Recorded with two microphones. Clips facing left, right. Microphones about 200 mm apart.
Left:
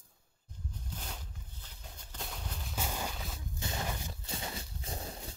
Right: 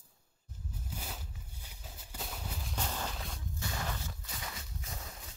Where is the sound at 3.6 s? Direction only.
20° left (ahead or behind).